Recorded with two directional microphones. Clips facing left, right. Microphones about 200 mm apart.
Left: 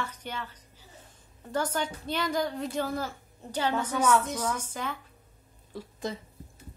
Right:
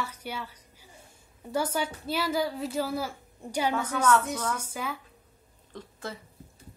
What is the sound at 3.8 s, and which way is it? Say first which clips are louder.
Speech: even; 10° left (ahead or behind).